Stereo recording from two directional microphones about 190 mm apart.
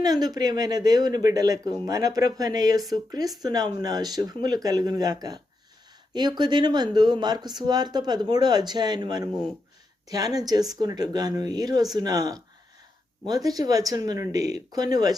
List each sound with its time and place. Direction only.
0.0 s speech: 20° right (ahead or behind)